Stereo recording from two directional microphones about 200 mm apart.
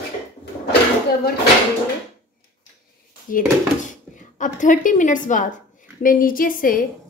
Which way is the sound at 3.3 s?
40° left (ahead or behind).